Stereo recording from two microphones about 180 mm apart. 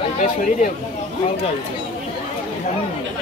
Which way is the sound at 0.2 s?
40° left (ahead or behind).